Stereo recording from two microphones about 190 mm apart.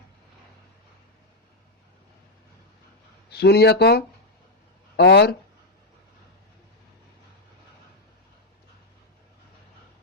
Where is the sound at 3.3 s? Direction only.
55° left (ahead or behind).